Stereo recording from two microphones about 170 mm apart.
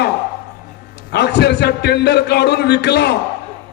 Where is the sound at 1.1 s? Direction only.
75° left (ahead or behind).